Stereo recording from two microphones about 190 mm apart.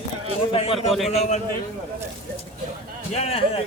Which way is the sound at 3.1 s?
35° left (ahead or behind).